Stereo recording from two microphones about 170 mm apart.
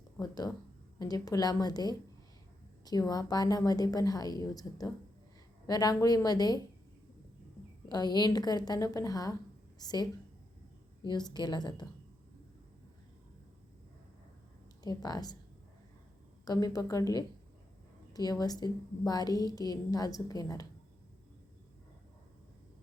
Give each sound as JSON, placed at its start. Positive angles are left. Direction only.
{"t": 0.2, "sound": "a woman's voice", "side_deg": 20}
{"t": 7.9, "sound": "a woman's voice", "side_deg": 25}
{"t": 14.8, "sound": "a woman's voice", "side_deg": 20}
{"t": 16.5, "sound": "a woman's voice", "side_deg": 20}